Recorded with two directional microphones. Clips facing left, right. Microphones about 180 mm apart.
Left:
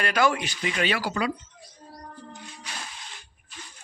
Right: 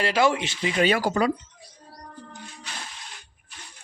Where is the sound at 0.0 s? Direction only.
25° right (ahead or behind).